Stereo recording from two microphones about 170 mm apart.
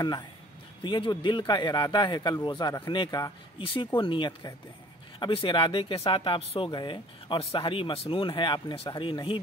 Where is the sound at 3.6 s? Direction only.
30° left (ahead or behind).